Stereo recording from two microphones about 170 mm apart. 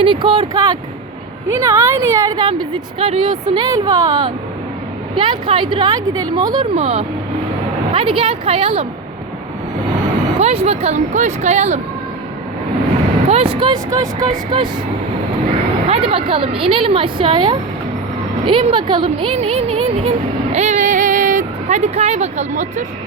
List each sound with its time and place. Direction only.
0.0 s speech: 30° right (ahead or behind)
6.7 s a woman's voice: 35° right (ahead or behind)
10.4 s a woman's voice: 35° right (ahead or behind)
13.2 s speech: 35° right (ahead or behind)
15.9 s a woman's voice: 35° right (ahead or behind)